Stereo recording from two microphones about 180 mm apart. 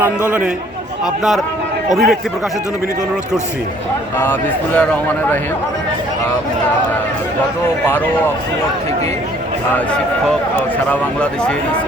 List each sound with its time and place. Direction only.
0.3 s a man's voice: 5° right (ahead or behind)
1.9 s a man's voice: centre (ahead or behind)
4.2 s speech: 10° left (ahead or behind)
7.9 s speech: 10° left (ahead or behind)
10.8 s speech: 5° left (ahead or behind)